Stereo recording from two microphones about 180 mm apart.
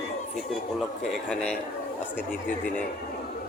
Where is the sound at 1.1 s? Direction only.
5° left (ahead or behind).